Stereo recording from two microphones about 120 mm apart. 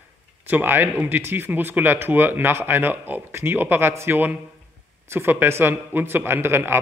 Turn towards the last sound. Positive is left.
turn(degrees=-20)  # may be behind; listen again after turning